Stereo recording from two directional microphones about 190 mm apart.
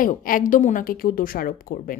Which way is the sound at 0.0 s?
45° left (ahead or behind).